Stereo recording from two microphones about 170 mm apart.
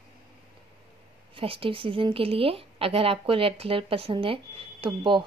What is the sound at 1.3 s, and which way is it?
A woman's voice, 35° right (ahead or behind).